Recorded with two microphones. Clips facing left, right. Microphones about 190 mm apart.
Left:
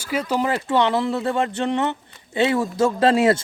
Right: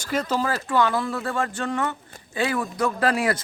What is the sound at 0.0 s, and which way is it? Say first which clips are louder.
Speech: left 2 dB; 10° left (ahead or behind).